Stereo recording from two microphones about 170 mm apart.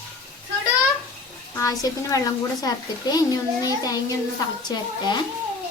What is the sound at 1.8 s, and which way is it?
A child's voice, 20° left (ahead or behind).